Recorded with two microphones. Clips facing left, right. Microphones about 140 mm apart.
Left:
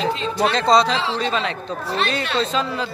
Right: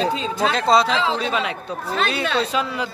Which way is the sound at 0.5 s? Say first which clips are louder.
Even; 5° right (ahead or behind).